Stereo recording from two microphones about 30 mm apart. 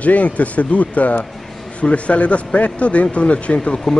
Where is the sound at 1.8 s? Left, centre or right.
Left.